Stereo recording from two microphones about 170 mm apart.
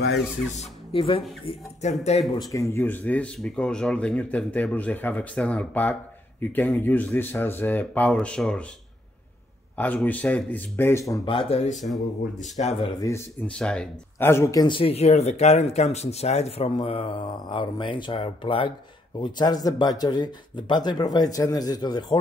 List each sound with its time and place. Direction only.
0.6 s speech: 30° left (ahead or behind)
2.3 s speech: 20° left (ahead or behind); by 8.6 s 5° left (ahead or behind)
9.8 s speech: 10° left (ahead or behind)
11.2 s speech: 35° left (ahead or behind)
11.7 s speech: centre (ahead or behind)
12.5 s speech: 40° left (ahead or behind)
13.6 s speech: 5° left (ahead or behind); by 22.2 s 25° left (ahead or behind)